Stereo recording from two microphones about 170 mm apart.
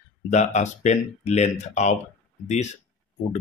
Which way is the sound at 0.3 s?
40° left (ahead or behind).